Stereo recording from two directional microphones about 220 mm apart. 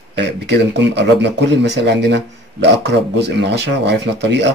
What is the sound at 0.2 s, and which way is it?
Speech, 50° right (ahead or behind).